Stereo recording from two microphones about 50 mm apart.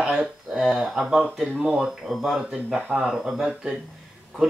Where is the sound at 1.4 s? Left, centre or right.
Centre.